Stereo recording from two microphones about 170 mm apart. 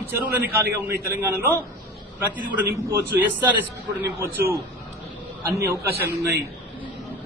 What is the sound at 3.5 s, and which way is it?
Speech, 15° right (ahead or behind).